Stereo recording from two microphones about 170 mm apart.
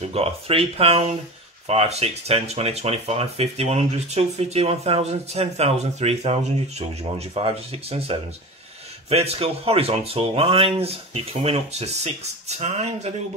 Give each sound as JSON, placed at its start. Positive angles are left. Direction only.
{"t": 0.1, "sound": "speech", "side_deg": -35}